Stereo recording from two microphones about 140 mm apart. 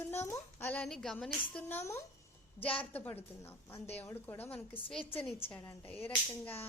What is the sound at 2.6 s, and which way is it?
Speech, 40° left (ahead or behind).